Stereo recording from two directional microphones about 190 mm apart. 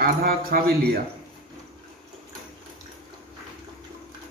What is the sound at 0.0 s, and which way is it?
Speech, 50° right (ahead or behind).